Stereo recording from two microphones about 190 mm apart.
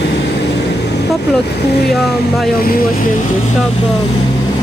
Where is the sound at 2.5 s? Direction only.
50° left (ahead or behind).